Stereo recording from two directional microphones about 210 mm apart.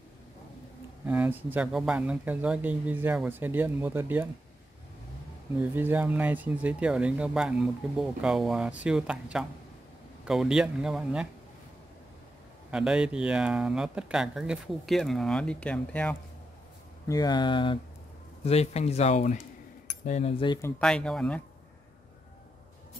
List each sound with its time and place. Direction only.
1.0 s speech: 10° right (ahead or behind)
5.6 s speech: 10° right (ahead or behind)
12.7 s speech: 5° right (ahead or behind)
17.1 s speech: 20° left (ahead or behind)
20.5 s speech: 5° left (ahead or behind)